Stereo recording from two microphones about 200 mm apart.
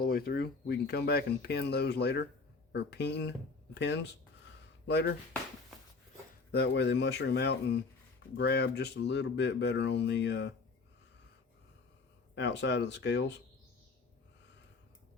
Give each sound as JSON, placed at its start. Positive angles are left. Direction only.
{"t": 0.0, "sound": "speech", "side_deg": 50}
{"t": 6.5, "sound": "speech", "side_deg": 55}
{"t": 12.3, "sound": "speech", "side_deg": 65}